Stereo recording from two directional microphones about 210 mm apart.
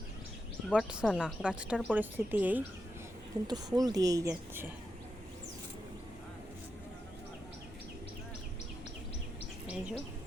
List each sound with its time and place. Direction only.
0.7 s a woman's voice: centre (ahead or behind)
3.4 s speech: 20° right (ahead or behind)
9.6 s bee: 5° right (ahead or behind)